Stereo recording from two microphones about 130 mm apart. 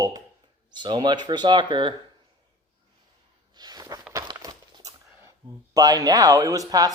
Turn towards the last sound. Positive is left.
turn(degrees=-30)  # may be behind; listen again after turning